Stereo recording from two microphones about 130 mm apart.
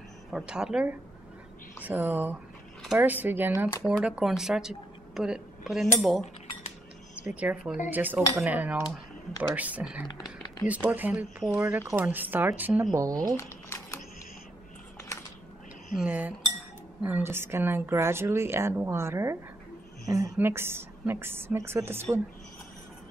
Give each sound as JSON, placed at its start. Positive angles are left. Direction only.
{"t": 0.3, "sound": "a woman's voice", "side_deg": -5}
{"t": 7.2, "sound": "a woman's voice", "side_deg": -10}
{"t": 12.9, "sound": "speech", "side_deg": -25}
{"t": 13.4, "sound": "a sound", "side_deg": 25}
{"t": 16.0, "sound": "a woman's voice", "side_deg": -10}